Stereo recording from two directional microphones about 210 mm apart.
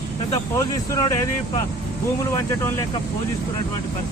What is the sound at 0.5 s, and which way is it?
Speech, 20° left (ahead or behind).